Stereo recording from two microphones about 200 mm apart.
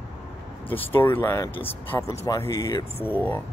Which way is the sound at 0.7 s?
10° left (ahead or behind).